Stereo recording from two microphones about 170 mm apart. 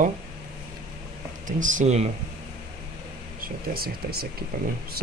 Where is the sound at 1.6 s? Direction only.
45° right (ahead or behind).